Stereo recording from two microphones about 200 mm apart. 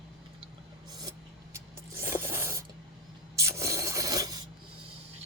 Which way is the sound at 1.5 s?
15° right (ahead or behind).